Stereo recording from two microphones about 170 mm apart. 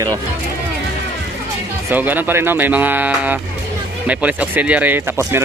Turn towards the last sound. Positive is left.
turn(degrees=-10)  # may be behind; listen again after turning